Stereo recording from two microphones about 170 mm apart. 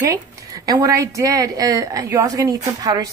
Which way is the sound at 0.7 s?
20° right (ahead or behind).